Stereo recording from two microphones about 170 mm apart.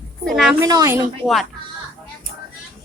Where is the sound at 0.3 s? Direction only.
Centre (ahead or behind).